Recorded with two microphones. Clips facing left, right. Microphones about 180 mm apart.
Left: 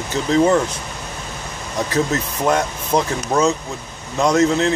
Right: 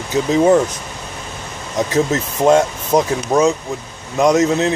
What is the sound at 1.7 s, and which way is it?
Speech, 25° right (ahead or behind).